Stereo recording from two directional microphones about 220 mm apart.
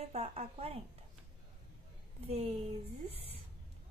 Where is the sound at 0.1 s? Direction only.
25° right (ahead or behind).